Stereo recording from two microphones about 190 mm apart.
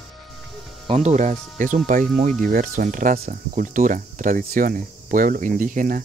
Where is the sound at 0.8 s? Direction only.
35° right (ahead or behind).